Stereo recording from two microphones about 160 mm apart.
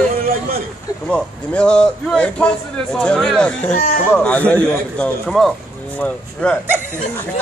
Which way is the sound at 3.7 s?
55° left (ahead or behind).